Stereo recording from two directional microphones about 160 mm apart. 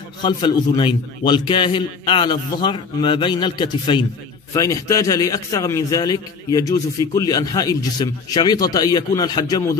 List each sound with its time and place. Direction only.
0.2 s a man's voice: 25° left (ahead or behind)